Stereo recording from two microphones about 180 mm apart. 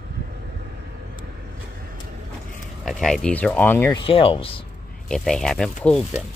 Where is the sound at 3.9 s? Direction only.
30° left (ahead or behind).